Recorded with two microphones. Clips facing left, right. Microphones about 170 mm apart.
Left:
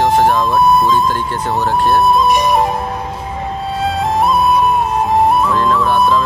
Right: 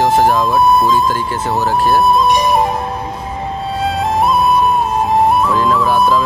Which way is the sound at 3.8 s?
Centre (ahead or behind).